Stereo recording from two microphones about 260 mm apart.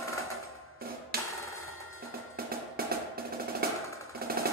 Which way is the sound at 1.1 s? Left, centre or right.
Right.